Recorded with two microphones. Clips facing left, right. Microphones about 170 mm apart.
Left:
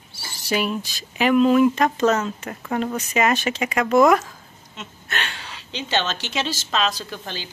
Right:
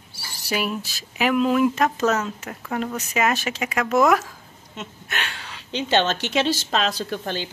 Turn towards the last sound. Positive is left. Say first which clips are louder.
# right 6 dB
turn(degrees=-55)  # may be behind; listen again after turning